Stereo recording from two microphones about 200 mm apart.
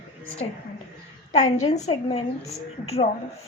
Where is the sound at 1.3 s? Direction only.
35° left (ahead or behind).